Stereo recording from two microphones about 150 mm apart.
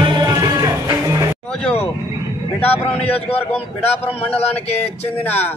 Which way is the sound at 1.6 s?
10° left (ahead or behind).